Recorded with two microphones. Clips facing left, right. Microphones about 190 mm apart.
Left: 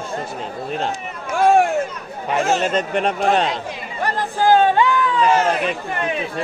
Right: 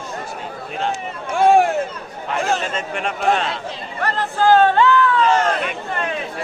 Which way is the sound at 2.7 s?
40° left (ahead or behind).